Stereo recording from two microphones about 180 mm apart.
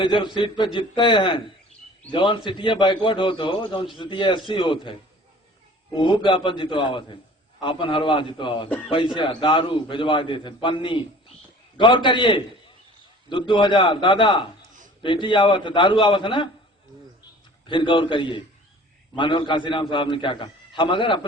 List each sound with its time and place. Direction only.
0.0 s a man's voice: 25° left (ahead or behind)
17.7 s a man's voice: 25° left (ahead or behind)